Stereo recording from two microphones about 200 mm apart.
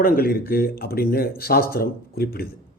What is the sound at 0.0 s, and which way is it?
Speech, 45° left (ahead or behind).